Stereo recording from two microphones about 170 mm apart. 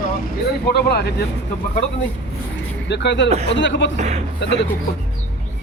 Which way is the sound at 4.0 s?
40° right (ahead or behind).